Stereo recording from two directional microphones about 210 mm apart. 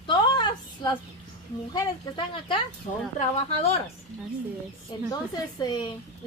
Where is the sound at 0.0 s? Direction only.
20° left (ahead or behind).